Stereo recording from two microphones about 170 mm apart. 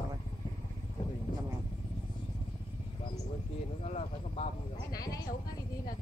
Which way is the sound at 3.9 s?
40° left (ahead or behind).